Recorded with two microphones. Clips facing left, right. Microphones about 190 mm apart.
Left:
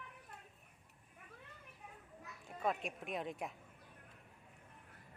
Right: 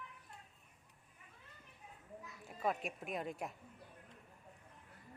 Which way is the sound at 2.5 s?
Centre (ahead or behind).